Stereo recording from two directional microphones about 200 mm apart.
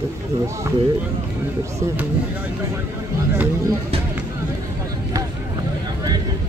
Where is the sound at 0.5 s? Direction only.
15° right (ahead or behind).